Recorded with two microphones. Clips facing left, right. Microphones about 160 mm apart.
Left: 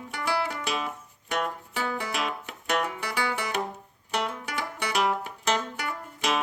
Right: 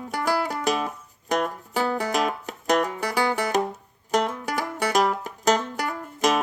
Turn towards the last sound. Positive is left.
turn(degrees=-40)  # may be behind; listen again after turning